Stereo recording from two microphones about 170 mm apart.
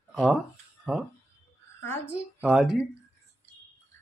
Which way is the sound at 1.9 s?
15° left (ahead or behind).